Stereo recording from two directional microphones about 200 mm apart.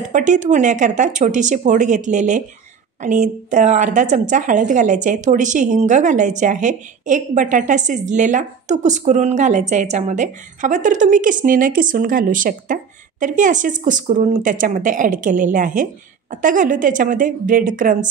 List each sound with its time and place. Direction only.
0.1 s a woman's voice: 40° right (ahead or behind)